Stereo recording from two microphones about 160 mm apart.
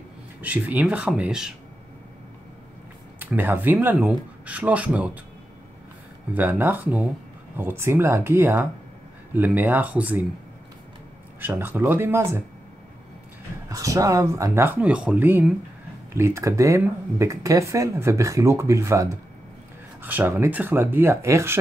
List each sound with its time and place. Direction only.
0.4 s speech: 10° right (ahead or behind)
3.2 s speech: 10° right (ahead or behind)
6.3 s speech: 10° right (ahead or behind)
11.4 s speech: 15° right (ahead or behind)
13.7 s speech: 20° right (ahead or behind)